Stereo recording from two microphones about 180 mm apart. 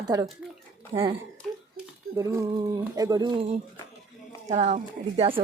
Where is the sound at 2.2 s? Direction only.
15° right (ahead or behind).